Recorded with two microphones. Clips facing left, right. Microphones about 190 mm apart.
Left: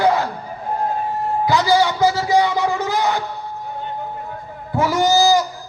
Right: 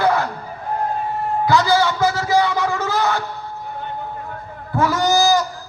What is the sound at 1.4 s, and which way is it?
A man's voice, 15° left (ahead or behind).